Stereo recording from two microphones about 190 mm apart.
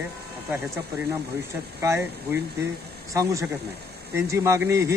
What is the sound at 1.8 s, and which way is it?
Speech, 15° right (ahead or behind).